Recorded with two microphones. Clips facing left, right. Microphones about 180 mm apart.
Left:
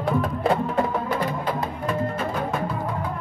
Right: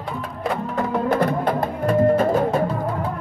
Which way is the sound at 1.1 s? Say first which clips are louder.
Right 6 dB; 55° right (ahead or behind).